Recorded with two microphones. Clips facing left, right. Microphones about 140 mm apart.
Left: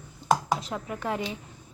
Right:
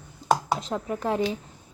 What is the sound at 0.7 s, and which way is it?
Speech, 10° right (ahead or behind).